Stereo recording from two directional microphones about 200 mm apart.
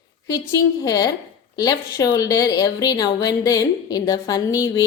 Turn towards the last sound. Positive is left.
turn(degrees=20)  # may be behind; listen again after turning